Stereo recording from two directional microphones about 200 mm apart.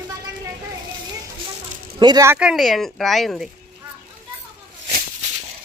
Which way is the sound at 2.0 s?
20° right (ahead or behind).